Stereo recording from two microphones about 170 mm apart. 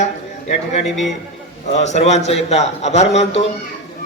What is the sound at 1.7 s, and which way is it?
A man's voice, 40° left (ahead or behind).